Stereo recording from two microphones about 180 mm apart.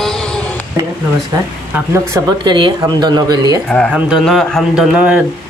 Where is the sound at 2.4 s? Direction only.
25° right (ahead or behind).